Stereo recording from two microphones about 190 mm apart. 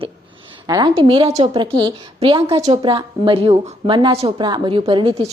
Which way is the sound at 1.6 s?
25° right (ahead or behind).